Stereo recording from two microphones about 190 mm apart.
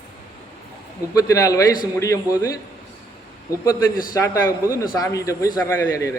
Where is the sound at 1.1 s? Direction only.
15° left (ahead or behind).